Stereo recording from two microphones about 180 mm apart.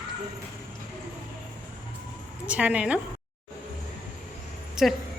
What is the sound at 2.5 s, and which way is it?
Speech, 5° right (ahead or behind).